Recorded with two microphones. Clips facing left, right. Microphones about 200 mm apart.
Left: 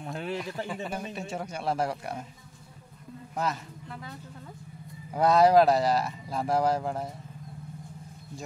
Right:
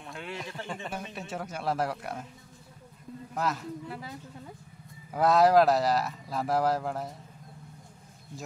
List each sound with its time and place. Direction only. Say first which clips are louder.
0.0 s a sound: left 6 dB; 40° left (ahead or behind)
0.8 s speech: left 3 dB; centre (ahead or behind)
3.3 s speech: even; centre (ahead or behind)
5.1 s speech: left 1 dB; centre (ahead or behind)